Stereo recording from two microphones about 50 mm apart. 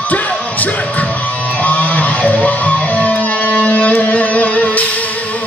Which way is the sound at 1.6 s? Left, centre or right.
Left.